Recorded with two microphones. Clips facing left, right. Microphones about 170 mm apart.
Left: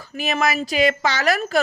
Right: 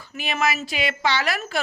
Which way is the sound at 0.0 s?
40° left (ahead or behind).